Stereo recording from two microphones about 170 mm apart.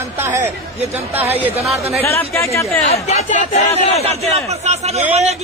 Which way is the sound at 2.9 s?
40° left (ahead or behind).